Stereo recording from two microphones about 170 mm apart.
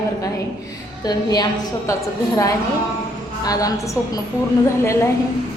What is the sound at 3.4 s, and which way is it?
Speech, 20° left (ahead or behind).